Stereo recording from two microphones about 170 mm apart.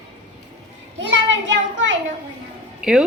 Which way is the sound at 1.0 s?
90° right.